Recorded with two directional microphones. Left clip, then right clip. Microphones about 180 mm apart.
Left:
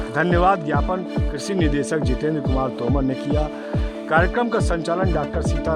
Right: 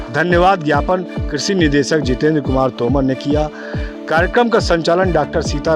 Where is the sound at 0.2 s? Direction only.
30° right (ahead or behind).